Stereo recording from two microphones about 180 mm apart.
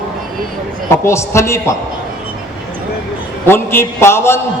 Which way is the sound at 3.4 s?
15° left (ahead or behind).